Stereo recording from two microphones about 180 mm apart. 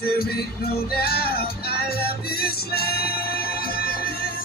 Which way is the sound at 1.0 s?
55° left (ahead or behind).